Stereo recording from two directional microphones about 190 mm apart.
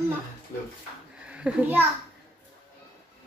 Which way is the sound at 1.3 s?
5° right (ahead or behind).